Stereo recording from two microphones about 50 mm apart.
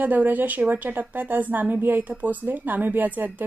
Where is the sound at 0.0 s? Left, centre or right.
Right.